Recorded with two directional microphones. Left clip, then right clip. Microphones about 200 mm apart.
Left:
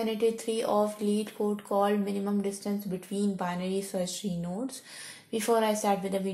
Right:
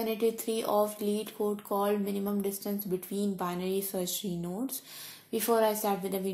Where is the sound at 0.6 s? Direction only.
35° right (ahead or behind).